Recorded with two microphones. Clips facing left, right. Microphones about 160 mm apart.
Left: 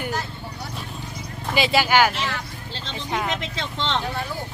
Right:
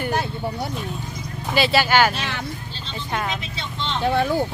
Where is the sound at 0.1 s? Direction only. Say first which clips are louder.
Right 6 dB; 65° right (ahead or behind).